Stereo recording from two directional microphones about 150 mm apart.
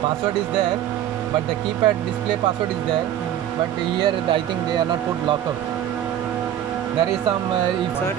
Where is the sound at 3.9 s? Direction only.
35° right (ahead or behind).